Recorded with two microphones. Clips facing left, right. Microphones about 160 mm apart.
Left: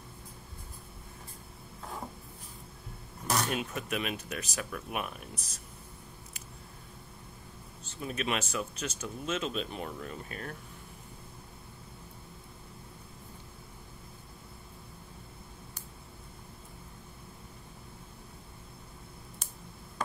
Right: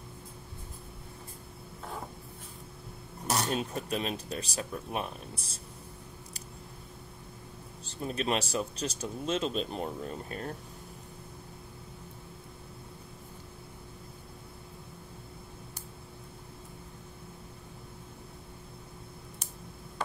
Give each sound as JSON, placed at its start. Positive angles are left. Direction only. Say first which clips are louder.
{"t": 3.3, "sound": "speech", "louder": "right 1 dB", "side_deg": -30}
{"t": 7.8, "sound": "speech", "louder": "right 2 dB", "side_deg": -35}